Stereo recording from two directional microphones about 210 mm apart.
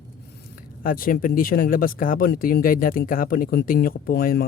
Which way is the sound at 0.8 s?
40° left (ahead or behind).